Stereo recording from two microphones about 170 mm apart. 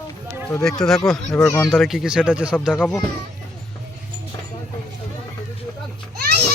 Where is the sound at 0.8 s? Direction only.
Centre (ahead or behind).